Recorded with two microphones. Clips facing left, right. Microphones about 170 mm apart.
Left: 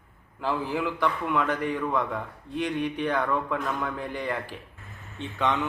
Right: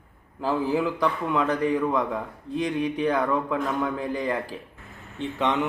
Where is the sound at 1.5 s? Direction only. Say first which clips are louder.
Right 4 dB; 35° right (ahead or behind).